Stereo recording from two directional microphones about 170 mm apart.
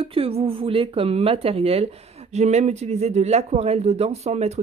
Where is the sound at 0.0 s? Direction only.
35° right (ahead or behind).